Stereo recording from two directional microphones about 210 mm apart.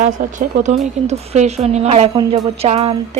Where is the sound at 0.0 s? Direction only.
35° right (ahead or behind).